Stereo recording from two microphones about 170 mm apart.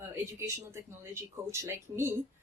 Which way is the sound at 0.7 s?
15° right (ahead or behind).